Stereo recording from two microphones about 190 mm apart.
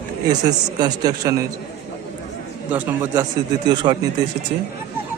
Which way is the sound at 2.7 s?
15° right (ahead or behind).